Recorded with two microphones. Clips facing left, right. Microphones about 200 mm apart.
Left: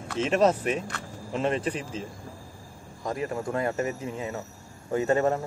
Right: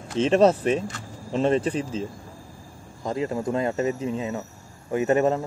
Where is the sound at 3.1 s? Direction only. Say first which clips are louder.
Right 4 dB; 25° right (ahead or behind).